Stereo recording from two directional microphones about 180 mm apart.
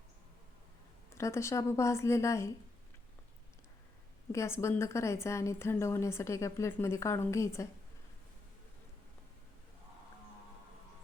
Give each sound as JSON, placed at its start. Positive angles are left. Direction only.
{"t": 1.1, "sound": "a woman's voice", "side_deg": 15}
{"t": 4.3, "sound": "a woman's voice", "side_deg": 15}